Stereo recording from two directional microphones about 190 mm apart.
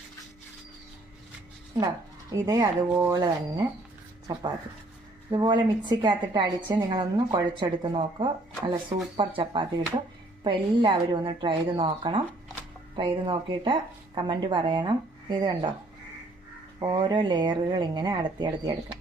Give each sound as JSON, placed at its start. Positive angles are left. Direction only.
{"t": 2.3, "sound": "speech", "side_deg": -20}
{"t": 4.3, "sound": "speech", "side_deg": -20}
{"t": 16.8, "sound": "speech", "side_deg": -25}